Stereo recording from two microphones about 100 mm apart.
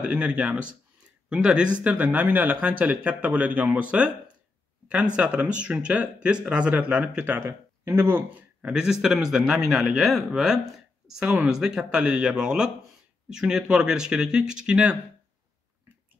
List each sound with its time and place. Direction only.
0.0 s speech: 15° right (ahead or behind)
7.3 s speech: 25° right (ahead or behind)
8.6 s speech: 5° right (ahead or behind)